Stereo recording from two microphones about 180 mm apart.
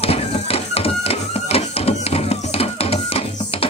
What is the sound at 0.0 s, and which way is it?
Music, 30° left (ahead or behind).